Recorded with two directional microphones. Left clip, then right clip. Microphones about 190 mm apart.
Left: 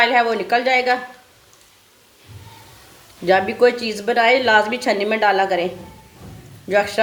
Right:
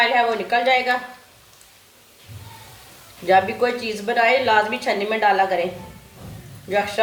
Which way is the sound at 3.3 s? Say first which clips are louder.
Left 2 dB; 55° left (ahead or behind).